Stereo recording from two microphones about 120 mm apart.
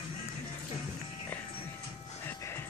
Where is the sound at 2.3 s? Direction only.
20° left (ahead or behind).